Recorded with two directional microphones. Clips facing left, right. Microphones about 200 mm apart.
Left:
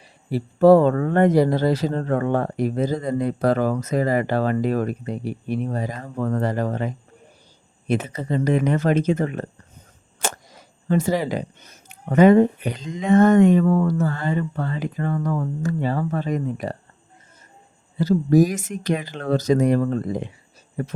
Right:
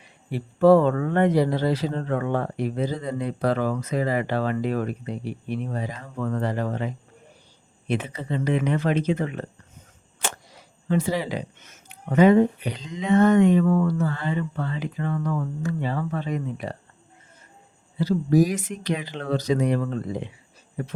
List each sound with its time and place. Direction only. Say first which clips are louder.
0.3 s speech: left 3 dB; 40° left (ahead or behind)
17.9 s speech: left 3 dB; 45° left (ahead or behind)